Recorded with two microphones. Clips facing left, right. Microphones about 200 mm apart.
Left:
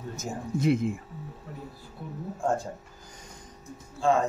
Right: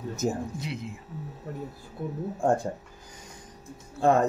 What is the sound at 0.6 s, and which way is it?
Speech, 50° left (ahead or behind).